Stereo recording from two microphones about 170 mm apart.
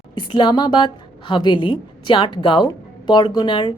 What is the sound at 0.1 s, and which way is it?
A woman's voice, 25° left (ahead or behind).